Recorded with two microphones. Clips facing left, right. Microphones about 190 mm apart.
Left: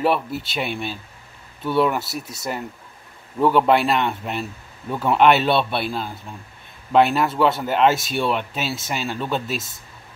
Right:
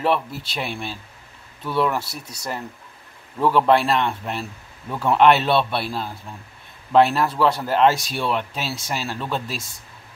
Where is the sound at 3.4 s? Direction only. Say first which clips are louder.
Left 1 dB; centre (ahead or behind).